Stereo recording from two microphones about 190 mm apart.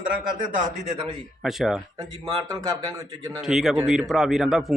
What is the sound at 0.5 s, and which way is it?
Speech, 40° right (ahead or behind).